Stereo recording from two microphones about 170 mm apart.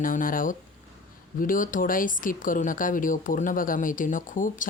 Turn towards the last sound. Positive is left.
turn(degrees=50)  # may be behind; listen again after turning